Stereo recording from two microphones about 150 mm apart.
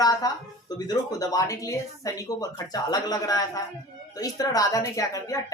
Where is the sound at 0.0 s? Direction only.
25° left (ahead or behind).